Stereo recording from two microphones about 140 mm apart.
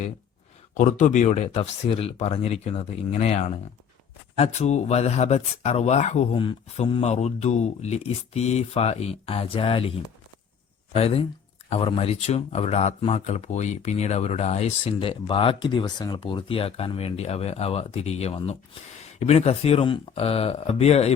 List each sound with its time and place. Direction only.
0.7 s speech: 65° left (ahead or behind)
6.3 s speech: 35° left (ahead or behind)
10.9 s speech: 45° left (ahead or behind)